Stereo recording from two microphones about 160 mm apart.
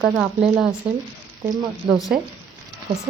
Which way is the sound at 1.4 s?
25° right (ahead or behind).